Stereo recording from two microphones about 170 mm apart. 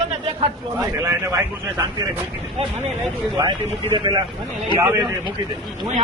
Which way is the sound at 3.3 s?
25° right (ahead or behind).